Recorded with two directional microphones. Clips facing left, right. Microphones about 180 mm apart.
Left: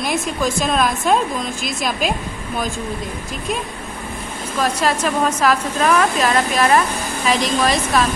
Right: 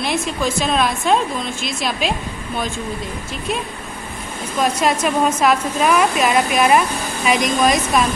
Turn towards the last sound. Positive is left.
turn(degrees=30)  # may be behind; listen again after turning